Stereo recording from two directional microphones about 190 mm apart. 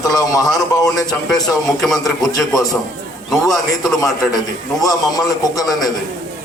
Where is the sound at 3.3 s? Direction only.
Centre (ahead or behind).